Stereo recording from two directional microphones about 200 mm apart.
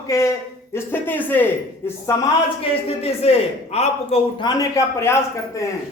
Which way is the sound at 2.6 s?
30° left (ahead or behind).